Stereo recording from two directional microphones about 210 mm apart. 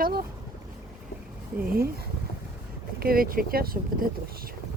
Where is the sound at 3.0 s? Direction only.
45° right (ahead or behind).